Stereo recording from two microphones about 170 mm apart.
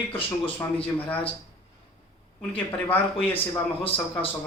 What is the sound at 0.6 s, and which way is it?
Speech, 10° left (ahead or behind).